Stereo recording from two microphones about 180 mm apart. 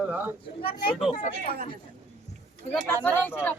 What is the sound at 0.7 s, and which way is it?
Speech, 30° left (ahead or behind).